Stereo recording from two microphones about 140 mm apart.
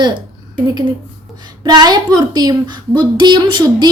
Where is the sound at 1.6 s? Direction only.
30° right (ahead or behind).